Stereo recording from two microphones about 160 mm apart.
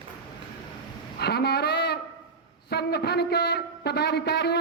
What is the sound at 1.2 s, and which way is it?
A woman's voice, 90° left.